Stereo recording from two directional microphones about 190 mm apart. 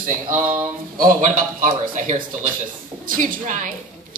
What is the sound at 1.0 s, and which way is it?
Speech, 45° right (ahead or behind).